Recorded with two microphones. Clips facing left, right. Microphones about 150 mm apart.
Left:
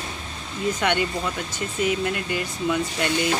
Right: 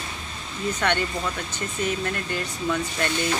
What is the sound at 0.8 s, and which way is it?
Speech, 10° left (ahead or behind).